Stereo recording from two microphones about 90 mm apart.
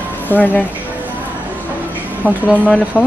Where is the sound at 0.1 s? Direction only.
20° left (ahead or behind).